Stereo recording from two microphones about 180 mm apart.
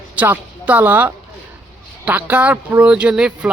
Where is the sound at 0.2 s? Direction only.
10° right (ahead or behind).